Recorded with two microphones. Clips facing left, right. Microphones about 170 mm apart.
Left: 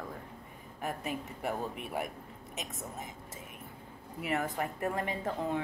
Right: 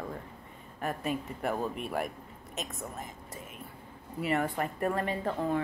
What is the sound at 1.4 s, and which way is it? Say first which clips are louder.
Speech: right 2 dB; 15° left (ahead or behind).